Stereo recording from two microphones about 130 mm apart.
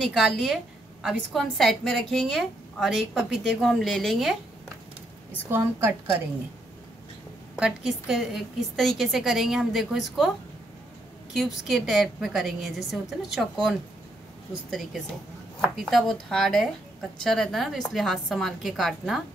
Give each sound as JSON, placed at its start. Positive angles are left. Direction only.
{"t": 0.0, "sound": "a woman's voice", "side_deg": 0}
{"t": 5.5, "sound": "a woman's voice", "side_deg": -20}
{"t": 7.5, "sound": "a woman's voice", "side_deg": -5}
{"t": 11.3, "sound": "a woman's voice", "side_deg": 0}